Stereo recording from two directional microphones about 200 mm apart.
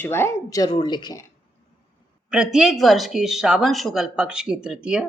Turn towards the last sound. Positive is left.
turn(degrees=-5)  # may be behind; listen again after turning